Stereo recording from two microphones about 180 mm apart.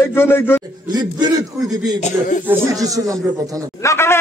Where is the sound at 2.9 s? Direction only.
20° right (ahead or behind).